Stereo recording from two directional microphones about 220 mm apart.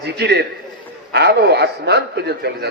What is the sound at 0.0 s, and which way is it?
A man's voice, 50° right (ahead or behind).